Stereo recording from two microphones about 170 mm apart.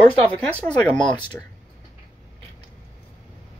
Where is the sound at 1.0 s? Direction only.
25° left (ahead or behind).